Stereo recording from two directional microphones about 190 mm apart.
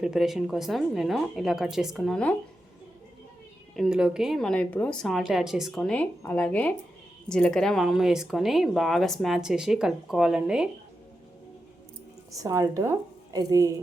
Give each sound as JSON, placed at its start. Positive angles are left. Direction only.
{"t": 0.0, "sound": "speech", "side_deg": 0}
{"t": 3.8, "sound": "speech", "side_deg": -5}
{"t": 12.3, "sound": "a woman's voice", "side_deg": -20}